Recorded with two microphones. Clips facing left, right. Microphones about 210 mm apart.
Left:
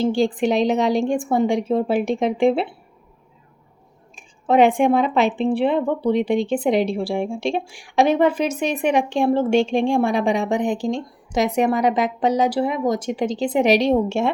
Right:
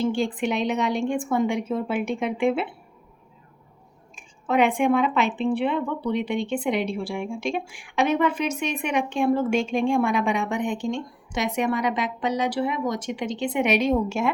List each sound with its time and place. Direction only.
0.0 s a woman's voice: 35° left (ahead or behind)
4.1 s a woman's voice: 35° left (ahead or behind)